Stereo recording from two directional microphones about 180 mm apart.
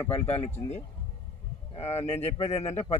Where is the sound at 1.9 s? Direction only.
35° left (ahead or behind).